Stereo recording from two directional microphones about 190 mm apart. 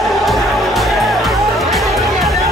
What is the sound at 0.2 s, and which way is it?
Music, centre (ahead or behind).